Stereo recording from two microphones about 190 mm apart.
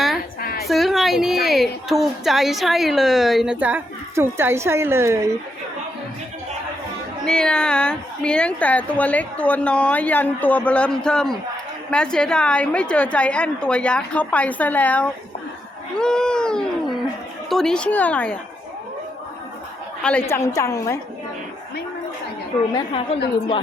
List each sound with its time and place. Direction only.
0.4 s a sound: 50° left (ahead or behind)
0.7 s a woman's voice: centre (ahead or behind)
7.3 s a woman's voice: 5° left (ahead or behind)
20.0 s a woman's voice: 5° left (ahead or behind)
22.7 s a woman's voice: 25° left (ahead or behind)